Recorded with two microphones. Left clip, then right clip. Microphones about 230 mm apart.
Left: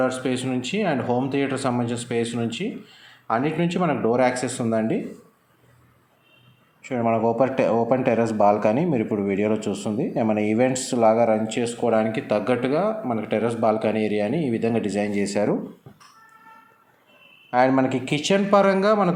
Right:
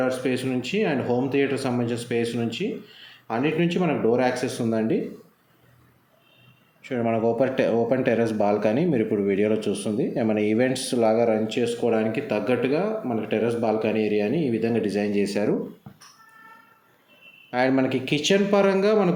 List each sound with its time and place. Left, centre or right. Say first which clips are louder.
0.0 s speech: left 1 dB; centre
6.8 s speech: left 2 dB; centre
17.5 s speech: left 3 dB; centre